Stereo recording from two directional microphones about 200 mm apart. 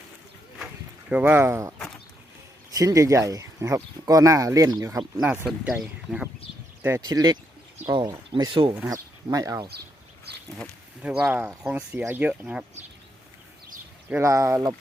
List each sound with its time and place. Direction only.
1.1 s speech: 5° right (ahead or behind)
2.7 s speech: 15° right (ahead or behind)
6.8 s speech: 15° right (ahead or behind)
11.2 s speech: 5° right (ahead or behind)
14.1 s speech: 15° right (ahead or behind)